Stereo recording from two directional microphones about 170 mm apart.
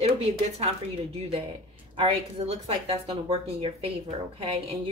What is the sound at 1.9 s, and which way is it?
A woman's voice, 35° right (ahead or behind).